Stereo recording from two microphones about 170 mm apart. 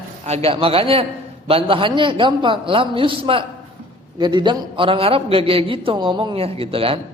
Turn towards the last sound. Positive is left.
turn(degrees=-35)  # may be behind; listen again after turning